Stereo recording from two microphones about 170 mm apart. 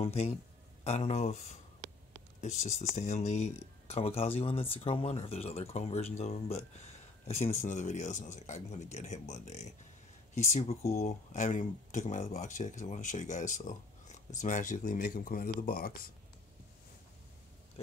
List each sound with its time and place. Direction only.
0.0 s speech: 40° left (ahead or behind); by 16.1 s 55° left (ahead or behind)